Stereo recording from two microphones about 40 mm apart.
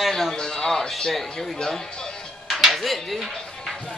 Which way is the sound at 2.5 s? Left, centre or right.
Centre.